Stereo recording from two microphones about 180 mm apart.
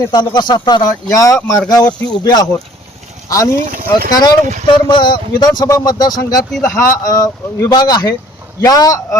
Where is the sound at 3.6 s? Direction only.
50° right (ahead or behind).